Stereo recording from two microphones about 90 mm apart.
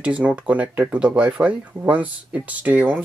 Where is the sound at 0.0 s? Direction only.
15° right (ahead or behind).